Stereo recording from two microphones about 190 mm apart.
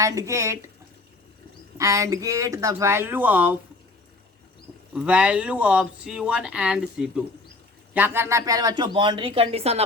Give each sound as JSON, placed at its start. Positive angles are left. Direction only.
{"t": 0.0, "sound": "speech", "side_deg": -15}
{"t": 1.8, "sound": "speech", "side_deg": -15}
{"t": 4.9, "sound": "speech", "side_deg": -5}